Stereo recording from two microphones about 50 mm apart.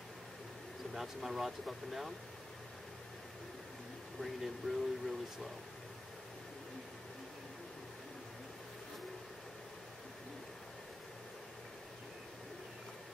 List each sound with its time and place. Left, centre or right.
0.9 s speech: centre
4.2 s speech: centre